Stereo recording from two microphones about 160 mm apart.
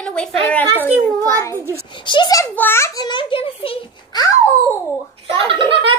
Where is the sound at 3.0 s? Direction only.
30° left (ahead or behind).